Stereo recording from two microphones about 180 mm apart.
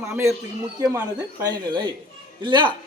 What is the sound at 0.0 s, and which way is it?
A man's voice, 15° right (ahead or behind).